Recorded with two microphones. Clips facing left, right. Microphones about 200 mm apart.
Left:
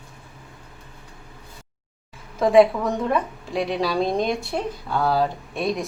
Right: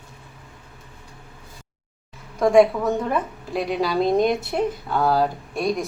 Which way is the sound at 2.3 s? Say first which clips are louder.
Even; centre (ahead or behind).